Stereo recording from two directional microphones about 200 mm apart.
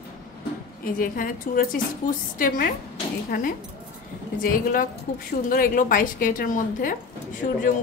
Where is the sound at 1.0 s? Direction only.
45° left (ahead or behind).